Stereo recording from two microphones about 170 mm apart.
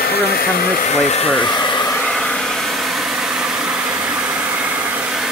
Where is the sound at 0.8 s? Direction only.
40° left (ahead or behind); by 1.9 s 25° left (ahead or behind).